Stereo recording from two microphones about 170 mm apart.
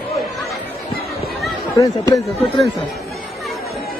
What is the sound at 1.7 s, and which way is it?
Speech, 20° left (ahead or behind).